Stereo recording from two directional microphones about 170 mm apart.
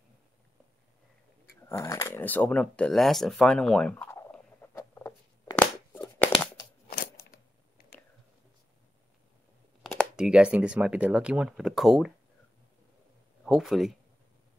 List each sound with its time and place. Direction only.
1.7 s speech: 20° left (ahead or behind)
5.6 s a sound: 10° left (ahead or behind)
6.9 s crunch: 65° left (ahead or behind)
10.1 s speech: 5° right (ahead or behind)
13.4 s speech: centre (ahead or behind)